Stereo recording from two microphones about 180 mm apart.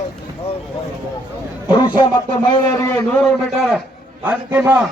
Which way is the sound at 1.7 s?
25° left (ahead or behind).